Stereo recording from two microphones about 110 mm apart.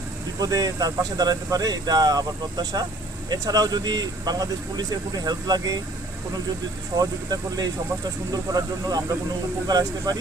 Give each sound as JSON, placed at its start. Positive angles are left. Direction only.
{"t": 0.3, "sound": "speech", "side_deg": -35}
{"t": 7.0, "sound": "speech", "side_deg": -35}